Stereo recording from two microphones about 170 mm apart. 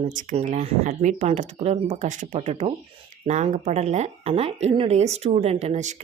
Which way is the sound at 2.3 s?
35° right (ahead or behind).